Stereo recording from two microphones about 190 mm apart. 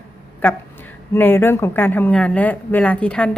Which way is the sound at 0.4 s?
10° left (ahead or behind).